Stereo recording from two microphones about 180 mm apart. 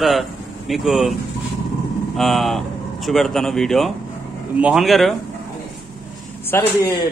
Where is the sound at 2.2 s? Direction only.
Centre (ahead or behind).